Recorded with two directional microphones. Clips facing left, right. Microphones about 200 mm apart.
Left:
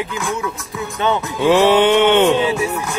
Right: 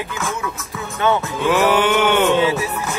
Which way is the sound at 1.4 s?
30° left (ahead or behind).